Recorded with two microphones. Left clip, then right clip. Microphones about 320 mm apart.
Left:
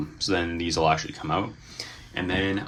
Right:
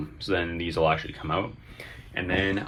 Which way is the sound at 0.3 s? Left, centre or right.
Centre.